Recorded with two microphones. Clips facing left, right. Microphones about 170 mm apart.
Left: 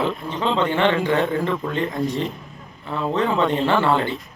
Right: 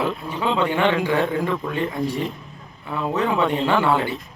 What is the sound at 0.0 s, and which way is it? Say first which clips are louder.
Speech: left 1 dB; 5° right (ahead or behind).